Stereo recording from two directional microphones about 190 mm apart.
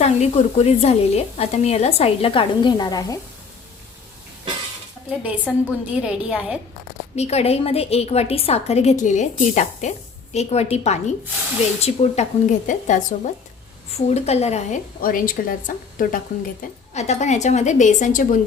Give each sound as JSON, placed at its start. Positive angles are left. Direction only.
{"t": 0.0, "sound": "a woman's voice", "side_deg": 35}
{"t": 5.5, "sound": "a woman's voice", "side_deg": 0}
{"t": 7.2, "sound": "a woman's voice", "side_deg": 35}